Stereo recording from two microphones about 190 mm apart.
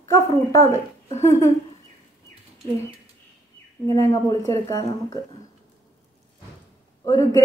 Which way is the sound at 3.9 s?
15° left (ahead or behind).